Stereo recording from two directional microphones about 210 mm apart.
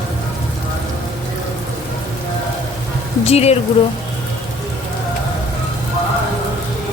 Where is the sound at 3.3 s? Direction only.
30° left (ahead or behind).